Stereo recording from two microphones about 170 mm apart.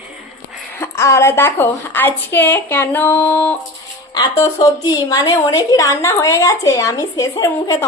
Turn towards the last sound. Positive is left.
turn(degrees=15)  # may be behind; listen again after turning